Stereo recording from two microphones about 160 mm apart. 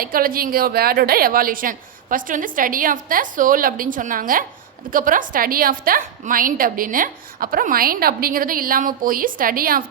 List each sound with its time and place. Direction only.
0.0 s a woman's voice: 65° right (ahead or behind)